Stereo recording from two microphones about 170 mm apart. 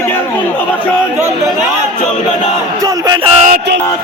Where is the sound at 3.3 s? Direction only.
50° right (ahead or behind).